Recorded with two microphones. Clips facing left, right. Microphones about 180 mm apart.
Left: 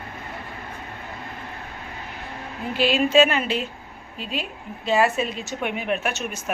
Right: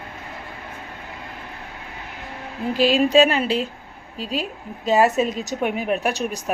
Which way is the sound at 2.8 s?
35° right (ahead or behind).